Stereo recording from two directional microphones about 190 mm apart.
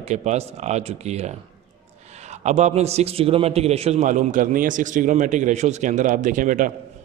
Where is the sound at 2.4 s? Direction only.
35° right (ahead or behind).